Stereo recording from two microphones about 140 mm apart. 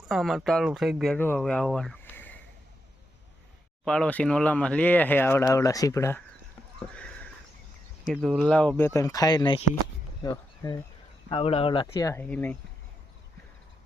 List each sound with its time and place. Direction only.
0.1 s speech: centre (ahead or behind)
3.8 s speech: 5° left (ahead or behind)
8.0 s speech: 5° right (ahead or behind)
8.4 s speech: 10° left (ahead or behind); by 10.8 s 30° left (ahead or behind)
11.3 s speech: 40° left (ahead or behind)
11.9 s speech: 25° left (ahead or behind)
12.2 s speech: 10° left (ahead or behind)